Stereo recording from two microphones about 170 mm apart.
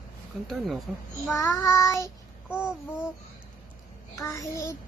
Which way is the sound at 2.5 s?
5° right (ahead or behind).